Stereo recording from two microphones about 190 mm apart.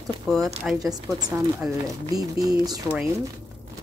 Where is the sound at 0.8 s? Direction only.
20° right (ahead or behind).